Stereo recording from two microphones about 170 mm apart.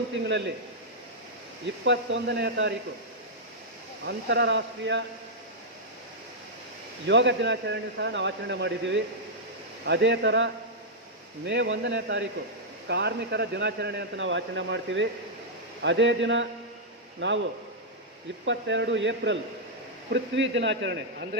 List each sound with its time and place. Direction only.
0.3 s speech: 90° right
1.6 s speech: 90° right
4.0 s speech: 85° right
7.1 s speech: 90° right
18.4 s speech: 90° right